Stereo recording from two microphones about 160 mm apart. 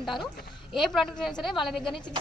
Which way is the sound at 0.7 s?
Centre (ahead or behind).